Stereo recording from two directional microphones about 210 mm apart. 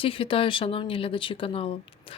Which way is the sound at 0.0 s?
25° left (ahead or behind).